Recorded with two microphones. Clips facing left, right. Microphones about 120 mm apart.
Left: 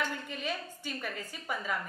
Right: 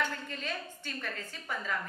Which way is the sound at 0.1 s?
10° left (ahead or behind).